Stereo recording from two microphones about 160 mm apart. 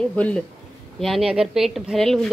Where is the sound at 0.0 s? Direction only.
5° left (ahead or behind).